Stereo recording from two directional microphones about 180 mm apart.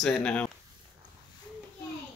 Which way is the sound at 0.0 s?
5° left (ahead or behind).